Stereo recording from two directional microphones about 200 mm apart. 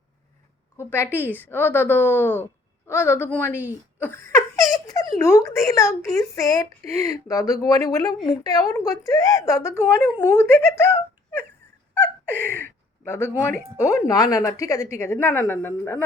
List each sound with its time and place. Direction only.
0.8 s speech: 10° left (ahead or behind)
4.0 s laughter: 10° left (ahead or behind)
4.7 s a child's voice: 20° left (ahead or behind)